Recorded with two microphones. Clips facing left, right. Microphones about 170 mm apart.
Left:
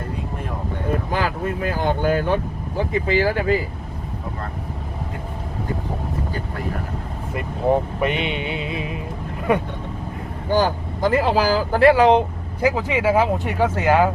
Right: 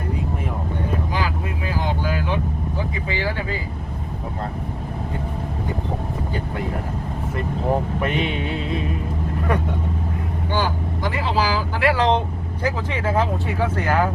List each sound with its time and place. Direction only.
1.1 s speech: 50° left (ahead or behind)
8.0 s music: centre (ahead or behind)
10.5 s speech: 45° left (ahead or behind)
11.9 s speech: 10° left (ahead or behind)